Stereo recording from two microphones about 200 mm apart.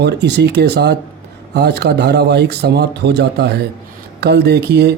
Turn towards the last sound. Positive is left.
turn(degrees=-50)  # may be behind; listen again after turning